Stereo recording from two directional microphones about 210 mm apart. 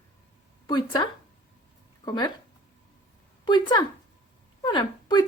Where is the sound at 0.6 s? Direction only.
20° left (ahead or behind).